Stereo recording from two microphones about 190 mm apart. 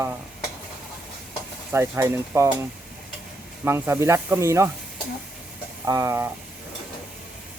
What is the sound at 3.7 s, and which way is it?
Speech, 10° right (ahead or behind).